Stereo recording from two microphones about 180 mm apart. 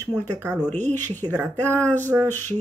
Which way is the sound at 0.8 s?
10° left (ahead or behind).